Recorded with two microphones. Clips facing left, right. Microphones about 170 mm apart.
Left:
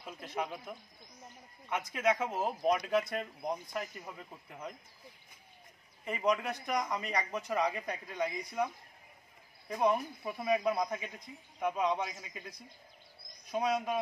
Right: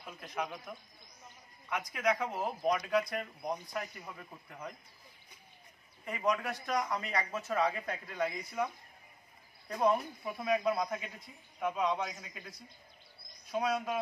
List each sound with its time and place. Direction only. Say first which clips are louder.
0.0 s a man's voice: left 1 dB; 25° left (ahead or behind)
1.7 s a man's voice: left 1 dB; 25° left (ahead or behind)
6.0 s speech: left 1 dB; 20° left (ahead or behind)
9.7 s a man's voice: even; 15° left (ahead or behind)